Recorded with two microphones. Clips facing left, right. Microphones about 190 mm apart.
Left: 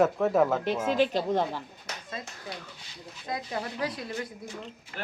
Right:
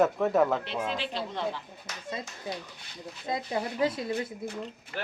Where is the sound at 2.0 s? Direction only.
25° right (ahead or behind).